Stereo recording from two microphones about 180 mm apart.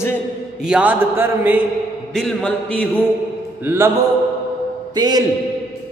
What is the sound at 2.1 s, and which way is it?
Speech, 5° left (ahead or behind).